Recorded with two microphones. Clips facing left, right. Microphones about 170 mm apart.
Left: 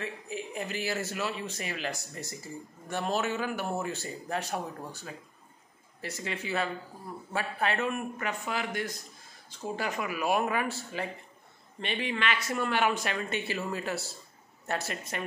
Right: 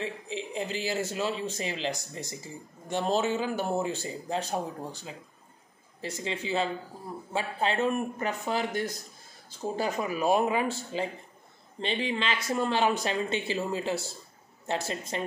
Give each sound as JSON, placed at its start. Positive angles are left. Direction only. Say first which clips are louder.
{"t": 0.0, "sound": "speech", "louder": "right 2 dB", "side_deg": -25}
{"t": 3.0, "sound": "speech", "louder": "right 3 dB", "side_deg": -30}
{"t": 5.9, "sound": "a man's voice", "louder": "right 3 dB", "side_deg": -25}